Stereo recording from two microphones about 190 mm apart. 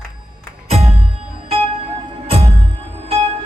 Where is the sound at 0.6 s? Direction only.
35° right (ahead or behind).